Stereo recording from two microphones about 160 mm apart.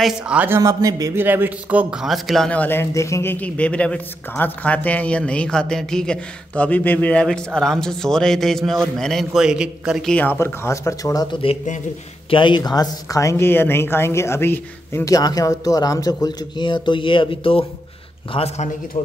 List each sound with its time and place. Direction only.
0.0 s a man's voice: 5° right (ahead or behind)
0.6 s a man's voice: 20° right (ahead or behind); by 10.1 s 5° right (ahead or behind)
10.1 s speech: 10° left (ahead or behind)
12.3 s speech: 30° left (ahead or behind)